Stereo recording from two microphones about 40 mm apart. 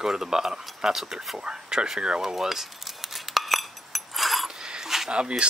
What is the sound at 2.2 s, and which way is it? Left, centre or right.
Cutlery, centre.